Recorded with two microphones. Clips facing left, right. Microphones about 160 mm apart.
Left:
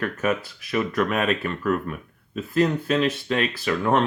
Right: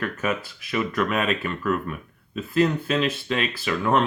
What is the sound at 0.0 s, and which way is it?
Speech, 40° left (ahead or behind).